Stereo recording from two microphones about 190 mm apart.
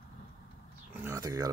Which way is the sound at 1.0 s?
15° right (ahead or behind).